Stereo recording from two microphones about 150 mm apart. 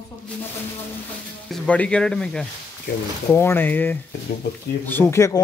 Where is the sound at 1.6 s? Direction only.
10° left (ahead or behind).